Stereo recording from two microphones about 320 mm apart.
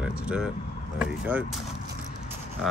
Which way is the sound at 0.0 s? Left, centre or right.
Centre.